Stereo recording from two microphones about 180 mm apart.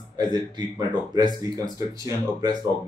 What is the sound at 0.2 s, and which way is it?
A man's voice, 20° right (ahead or behind).